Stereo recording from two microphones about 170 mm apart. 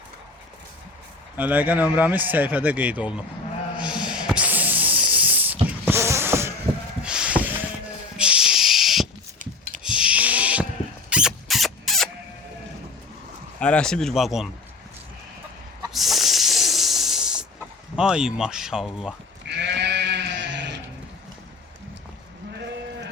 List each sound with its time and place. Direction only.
1.4 s speech: 10° right (ahead or behind)
3.8 s snake: 5° right (ahead or behind)
7.0 s a sound: 5° right (ahead or behind)
8.1 s snake: 5° right (ahead or behind)
9.8 s a sound: 5° right (ahead or behind)
13.6 s speech: 5° left (ahead or behind)
15.9 s snake: centre (ahead or behind)
17.9 s speech: 5° right (ahead or behind)
19.5 s sheep: 85° right